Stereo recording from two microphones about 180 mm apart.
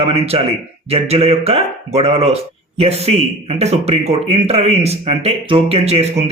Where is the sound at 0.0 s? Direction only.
35° right (ahead or behind).